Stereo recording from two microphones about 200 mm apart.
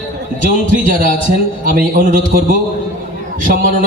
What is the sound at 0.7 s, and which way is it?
Speech, 40° right (ahead or behind).